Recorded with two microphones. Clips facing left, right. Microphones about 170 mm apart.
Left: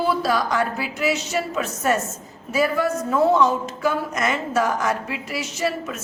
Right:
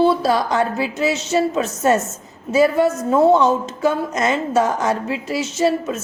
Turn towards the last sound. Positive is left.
turn(degrees=-25)  # may be behind; listen again after turning